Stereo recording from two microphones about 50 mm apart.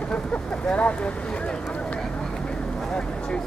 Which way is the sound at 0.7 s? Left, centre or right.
Left.